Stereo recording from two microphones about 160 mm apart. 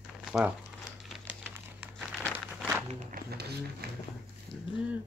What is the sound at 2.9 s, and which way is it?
Walk, 55° right (ahead or behind).